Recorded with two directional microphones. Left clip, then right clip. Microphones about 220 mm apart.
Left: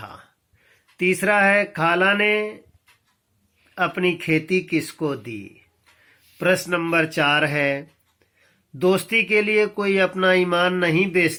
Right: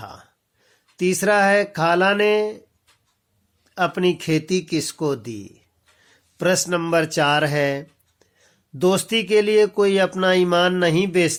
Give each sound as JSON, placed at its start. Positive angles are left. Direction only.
{"t": 0.0, "sound": "a sound", "side_deg": -50}
{"t": 0.9, "sound": "speech", "side_deg": -50}
{"t": 3.8, "sound": "speech", "side_deg": -50}